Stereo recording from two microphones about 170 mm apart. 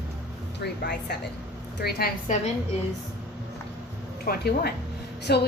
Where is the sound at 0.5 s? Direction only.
90° left; by 2.1 s 70° left (ahead or behind).